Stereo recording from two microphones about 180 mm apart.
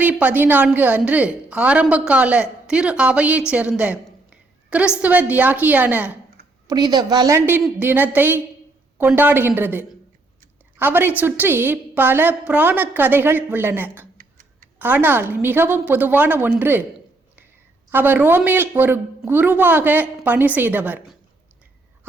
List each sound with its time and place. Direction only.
0.0 s a woman's voice: 10° right (ahead or behind)
6.7 s a woman's voice: 25° right (ahead or behind)
14.2 s tick-tock: 50° right (ahead or behind)
14.8 s a woman's voice: 10° right (ahead or behind)
17.9 s a woman's voice: 10° right (ahead or behind)